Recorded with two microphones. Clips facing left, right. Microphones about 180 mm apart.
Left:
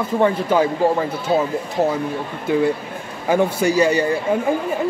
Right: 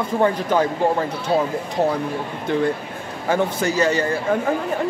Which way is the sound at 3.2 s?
10° left (ahead or behind).